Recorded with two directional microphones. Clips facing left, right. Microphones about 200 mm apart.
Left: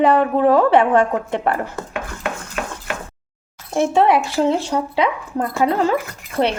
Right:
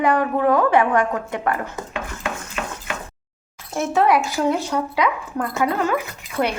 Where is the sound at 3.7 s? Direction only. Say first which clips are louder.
Left 3 dB; 30° left (ahead or behind).